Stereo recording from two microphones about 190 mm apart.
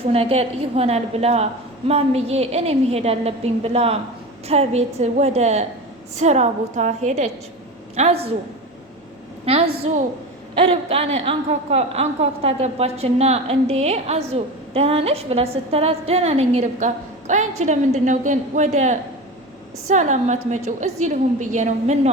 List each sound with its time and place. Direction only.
0.0 s a woman's voice: 30° right (ahead or behind)
10.6 s a woman's voice: 30° right (ahead or behind)